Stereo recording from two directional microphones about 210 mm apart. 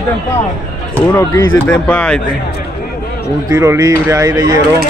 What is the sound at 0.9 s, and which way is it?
Speech, 15° left (ahead or behind).